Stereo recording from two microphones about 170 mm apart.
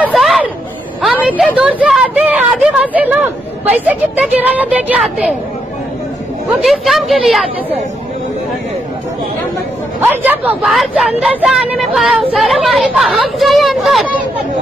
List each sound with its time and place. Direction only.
0.0 s chatter: centre (ahead or behind)
1.2 s speech: 10° right (ahead or behind)
6.6 s a woman's voice: centre (ahead or behind)
10.0 s a woman's voice: 10° right (ahead or behind)